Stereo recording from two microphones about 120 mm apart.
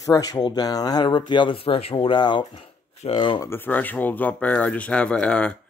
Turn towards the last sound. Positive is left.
turn(degrees=10)  # may be behind; listen again after turning